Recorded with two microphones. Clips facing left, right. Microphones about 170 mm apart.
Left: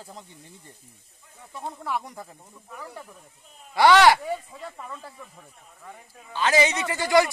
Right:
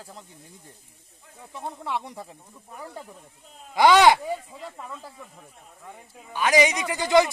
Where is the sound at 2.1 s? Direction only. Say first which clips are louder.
Right 1 dB; 10° right (ahead or behind).